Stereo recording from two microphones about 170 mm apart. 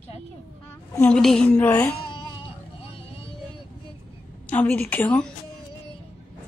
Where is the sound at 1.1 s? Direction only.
5° left (ahead or behind).